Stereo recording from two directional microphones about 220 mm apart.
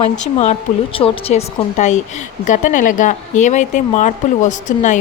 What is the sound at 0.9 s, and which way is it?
A woman's voice, 25° left (ahead or behind).